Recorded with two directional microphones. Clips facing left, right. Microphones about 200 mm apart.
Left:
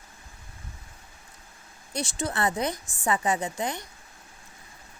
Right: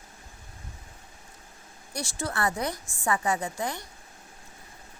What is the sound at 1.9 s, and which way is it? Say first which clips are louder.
Speech: left 3 dB; 20° left (ahead or behind).